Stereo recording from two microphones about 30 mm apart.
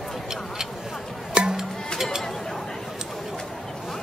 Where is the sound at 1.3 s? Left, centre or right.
Right.